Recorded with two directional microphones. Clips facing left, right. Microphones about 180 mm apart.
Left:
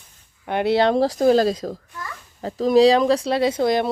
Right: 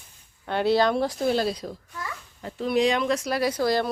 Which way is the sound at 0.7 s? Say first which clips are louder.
Left 5 dB; 30° left (ahead or behind).